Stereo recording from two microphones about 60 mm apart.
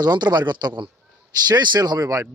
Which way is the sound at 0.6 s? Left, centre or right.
Right.